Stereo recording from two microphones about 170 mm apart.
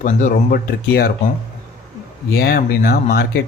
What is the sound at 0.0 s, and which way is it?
Speech, 50° left (ahead or behind).